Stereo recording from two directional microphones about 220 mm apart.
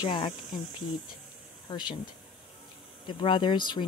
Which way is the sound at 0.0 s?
20° left (ahead or behind).